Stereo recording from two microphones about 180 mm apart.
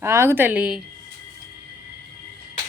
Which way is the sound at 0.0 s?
15° right (ahead or behind).